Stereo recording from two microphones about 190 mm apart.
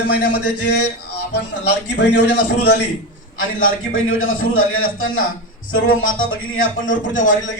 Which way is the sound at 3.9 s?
90° left.